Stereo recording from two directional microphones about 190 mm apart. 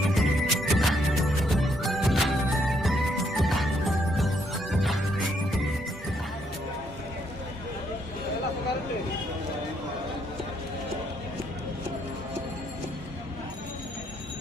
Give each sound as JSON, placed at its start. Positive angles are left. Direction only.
{"t": 0.1, "sound": "music", "side_deg": 0}